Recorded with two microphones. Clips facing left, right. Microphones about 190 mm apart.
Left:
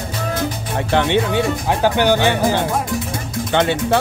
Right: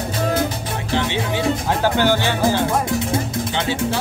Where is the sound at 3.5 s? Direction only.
60° left (ahead or behind).